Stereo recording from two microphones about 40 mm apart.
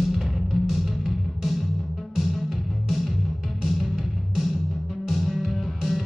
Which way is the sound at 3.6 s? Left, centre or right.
Centre.